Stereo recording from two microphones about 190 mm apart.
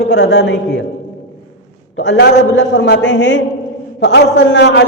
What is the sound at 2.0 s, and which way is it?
A man's voice, 65° left (ahead or behind).